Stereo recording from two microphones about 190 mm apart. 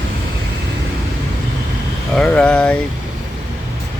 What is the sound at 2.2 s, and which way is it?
Speech, 5° left (ahead or behind).